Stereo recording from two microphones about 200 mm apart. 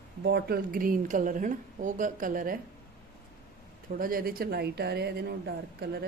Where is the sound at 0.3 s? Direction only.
50° right (ahead or behind).